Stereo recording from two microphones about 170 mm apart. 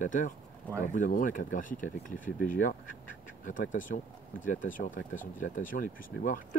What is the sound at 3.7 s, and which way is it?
Speech, 50° left (ahead or behind).